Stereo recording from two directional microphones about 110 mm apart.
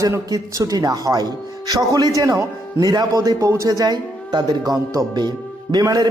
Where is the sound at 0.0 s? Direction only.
30° right (ahead or behind).